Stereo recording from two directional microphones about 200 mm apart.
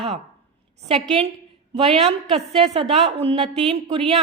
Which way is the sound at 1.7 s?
30° right (ahead or behind).